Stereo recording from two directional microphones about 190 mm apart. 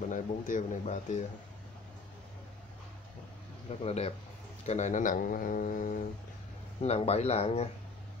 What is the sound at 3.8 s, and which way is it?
Speech, 35° left (ahead or behind).